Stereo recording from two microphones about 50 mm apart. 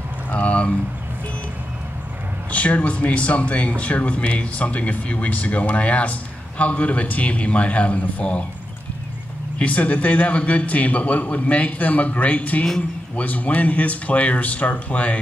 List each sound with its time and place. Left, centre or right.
0.3 s a sound: left
2.5 s speech: left
9.6 s speech: left